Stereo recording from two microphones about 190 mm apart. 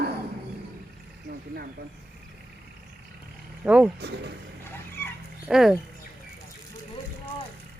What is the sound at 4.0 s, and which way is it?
Vehicle, 60° right (ahead or behind).